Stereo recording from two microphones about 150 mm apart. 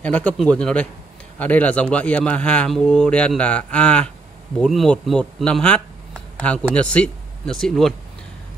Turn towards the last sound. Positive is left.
turn(degrees=0)  # may be behind; listen again after turning